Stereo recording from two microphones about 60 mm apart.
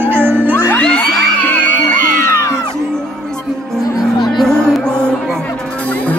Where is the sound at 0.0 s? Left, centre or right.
Right.